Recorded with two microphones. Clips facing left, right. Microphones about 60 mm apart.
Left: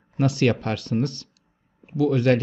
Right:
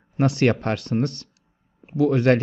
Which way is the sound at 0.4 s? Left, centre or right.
Right.